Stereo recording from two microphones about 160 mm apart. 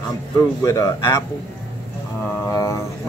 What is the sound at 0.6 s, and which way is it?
Speech, 20° left (ahead or behind).